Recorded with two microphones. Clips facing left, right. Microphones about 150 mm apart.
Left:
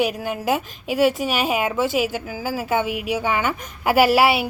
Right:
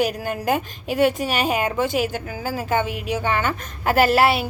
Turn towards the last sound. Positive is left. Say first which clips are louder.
# left 1 dB
turn(degrees=10)  # may be behind; listen again after turning